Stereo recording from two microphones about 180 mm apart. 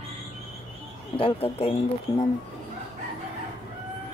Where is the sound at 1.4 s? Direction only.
35° left (ahead or behind).